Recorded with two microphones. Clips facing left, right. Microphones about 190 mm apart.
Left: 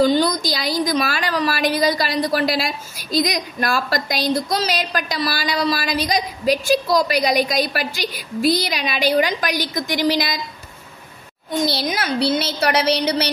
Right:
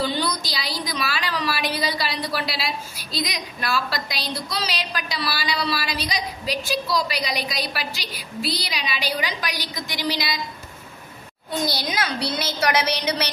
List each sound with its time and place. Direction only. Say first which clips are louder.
0.0 s a woman's voice: left 9 dB; 45° left (ahead or behind)
11.6 s a woman's voice: left 4 dB; 25° left (ahead or behind)